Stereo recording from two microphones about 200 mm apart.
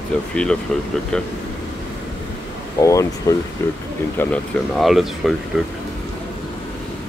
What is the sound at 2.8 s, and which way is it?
Speech, 15° left (ahead or behind).